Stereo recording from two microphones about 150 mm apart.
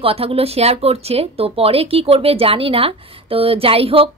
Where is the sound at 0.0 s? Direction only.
40° right (ahead or behind).